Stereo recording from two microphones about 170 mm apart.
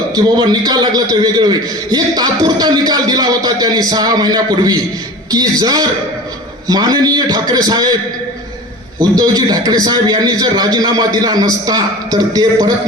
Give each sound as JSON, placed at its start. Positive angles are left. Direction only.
{"t": 0.1, "sound": "a man's voice", "side_deg": -25}
{"t": 9.0, "sound": "a man's voice", "side_deg": -25}